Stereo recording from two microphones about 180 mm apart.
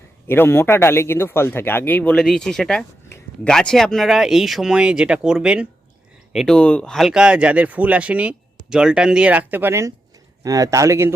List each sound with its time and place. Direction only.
0.3 s a man's voice: 10° left (ahead or behind); by 11.1 s 15° right (ahead or behind)